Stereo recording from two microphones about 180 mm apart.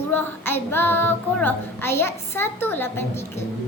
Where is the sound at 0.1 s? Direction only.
10° left (ahead or behind).